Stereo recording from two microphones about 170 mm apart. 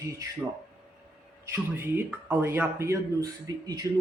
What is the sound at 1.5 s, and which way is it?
Speech, 15° right (ahead or behind).